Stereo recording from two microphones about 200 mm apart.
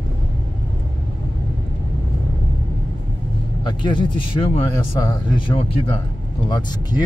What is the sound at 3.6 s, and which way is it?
Speech, 25° left (ahead or behind).